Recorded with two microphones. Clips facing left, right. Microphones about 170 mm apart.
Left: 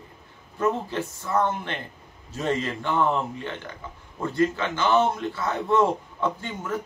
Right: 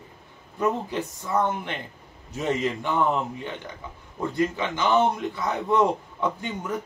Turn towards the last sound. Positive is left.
turn(degrees=-15)  # may be behind; listen again after turning